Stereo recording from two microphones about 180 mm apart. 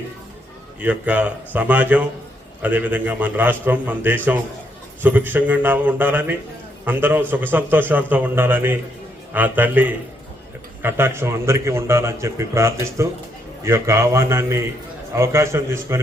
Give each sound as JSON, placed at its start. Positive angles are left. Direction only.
{"t": 0.8, "sound": "a man's voice", "side_deg": -5}